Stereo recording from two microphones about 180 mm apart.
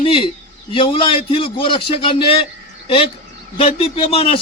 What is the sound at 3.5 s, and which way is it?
Speech, 30° left (ahead or behind).